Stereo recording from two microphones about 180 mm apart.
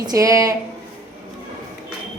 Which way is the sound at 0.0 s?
20° right (ahead or behind).